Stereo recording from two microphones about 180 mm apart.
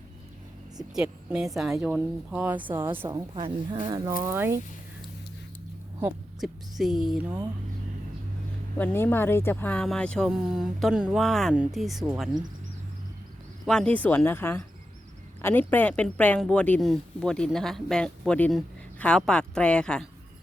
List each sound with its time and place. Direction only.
0.9 s speech: 5° right (ahead or behind)
3.3 s speech: 30° right (ahead or behind); by 4.6 s 15° right (ahead or behind)
6.4 s speech: centre (ahead or behind)
8.8 s speech: 10° left (ahead or behind)
13.7 s speech: 5° left (ahead or behind)